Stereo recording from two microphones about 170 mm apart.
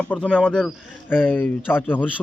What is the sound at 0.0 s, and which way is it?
Speech, 5° left (ahead or behind).